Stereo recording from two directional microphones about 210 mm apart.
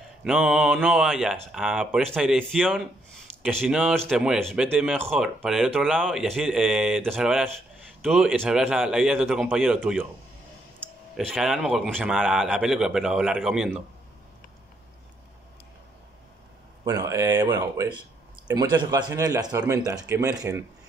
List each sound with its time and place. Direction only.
0.2 s speech: 5° right (ahead or behind)
11.1 s speech: centre (ahead or behind)
16.8 s speech: 15° right (ahead or behind)